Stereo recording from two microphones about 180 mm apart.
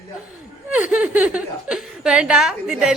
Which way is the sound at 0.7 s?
5° right (ahead or behind).